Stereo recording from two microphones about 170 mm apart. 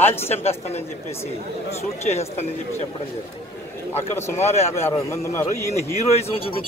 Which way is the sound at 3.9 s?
15° left (ahead or behind).